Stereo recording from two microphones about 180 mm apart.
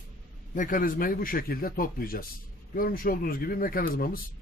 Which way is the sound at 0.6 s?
50° left (ahead or behind).